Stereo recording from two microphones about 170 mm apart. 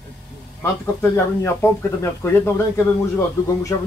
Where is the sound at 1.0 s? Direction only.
10° left (ahead or behind).